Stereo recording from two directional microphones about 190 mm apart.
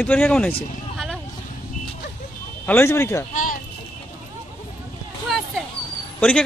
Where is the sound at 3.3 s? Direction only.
45° left (ahead or behind).